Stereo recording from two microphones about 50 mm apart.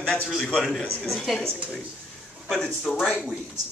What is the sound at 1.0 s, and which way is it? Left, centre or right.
Speech, centre.